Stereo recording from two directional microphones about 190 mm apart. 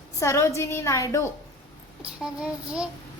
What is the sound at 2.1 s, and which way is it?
Speech, 5° right (ahead or behind).